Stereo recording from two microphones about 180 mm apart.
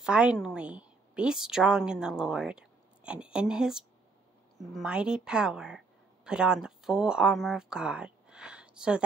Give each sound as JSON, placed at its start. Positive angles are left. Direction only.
{"t": 0.0, "sound": "a woman's voice", "side_deg": -5}